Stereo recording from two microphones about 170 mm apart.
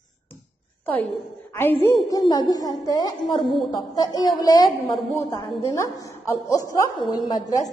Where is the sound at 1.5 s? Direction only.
10° left (ahead or behind).